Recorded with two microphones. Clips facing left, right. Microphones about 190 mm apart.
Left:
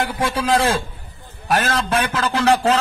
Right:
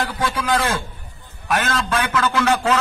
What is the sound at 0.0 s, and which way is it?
A man's voice, 25° left (ahead or behind).